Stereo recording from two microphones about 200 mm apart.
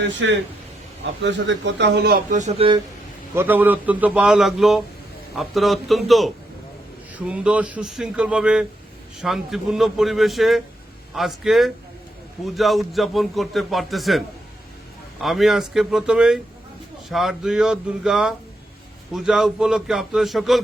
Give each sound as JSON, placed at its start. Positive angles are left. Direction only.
{"t": 0.0, "sound": "speech", "side_deg": -65}
{"t": 2.3, "sound": "speech", "side_deg": -35}
{"t": 3.3, "sound": "a man's voice", "side_deg": -10}